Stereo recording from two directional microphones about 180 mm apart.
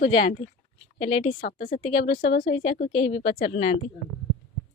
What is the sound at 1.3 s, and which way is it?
Speech, 50° left (ahead or behind).